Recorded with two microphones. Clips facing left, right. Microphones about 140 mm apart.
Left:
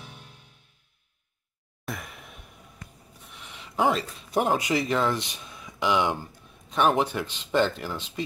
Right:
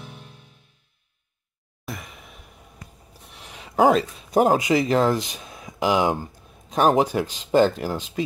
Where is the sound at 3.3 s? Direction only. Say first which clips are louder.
Right 7 dB; 40° right (ahead or behind).